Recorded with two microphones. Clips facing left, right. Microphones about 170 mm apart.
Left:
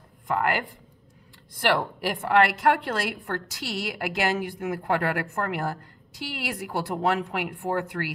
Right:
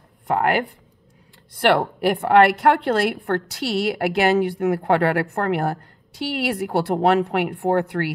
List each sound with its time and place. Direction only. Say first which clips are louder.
0.3 s a woman's voice: right 6 dB; 65° right (ahead or behind)